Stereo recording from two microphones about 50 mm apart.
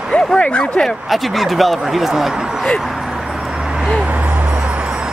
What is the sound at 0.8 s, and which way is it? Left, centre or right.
Speech, centre.